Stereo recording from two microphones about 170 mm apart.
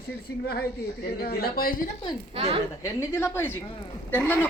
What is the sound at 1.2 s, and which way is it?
Speech, 65° left (ahead or behind).